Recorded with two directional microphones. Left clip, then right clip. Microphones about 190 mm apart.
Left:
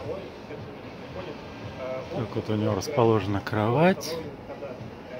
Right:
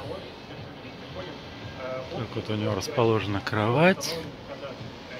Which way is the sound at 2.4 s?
25° left (ahead or behind).